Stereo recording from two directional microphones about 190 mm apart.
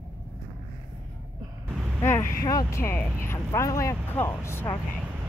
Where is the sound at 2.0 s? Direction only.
15° left (ahead or behind).